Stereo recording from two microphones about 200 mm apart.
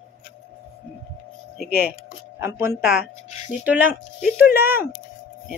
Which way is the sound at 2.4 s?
15° right (ahead or behind).